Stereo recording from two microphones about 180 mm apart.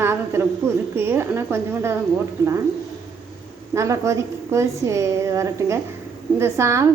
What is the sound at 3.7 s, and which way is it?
A woman's voice, 15° right (ahead or behind).